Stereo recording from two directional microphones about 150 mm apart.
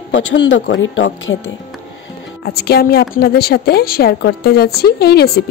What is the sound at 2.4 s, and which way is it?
A woman's voice, 90° left.